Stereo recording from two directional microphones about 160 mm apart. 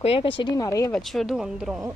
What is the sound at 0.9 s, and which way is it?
Speech, centre (ahead or behind).